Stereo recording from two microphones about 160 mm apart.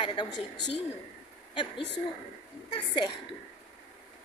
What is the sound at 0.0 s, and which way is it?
Speech, 30° left (ahead or behind).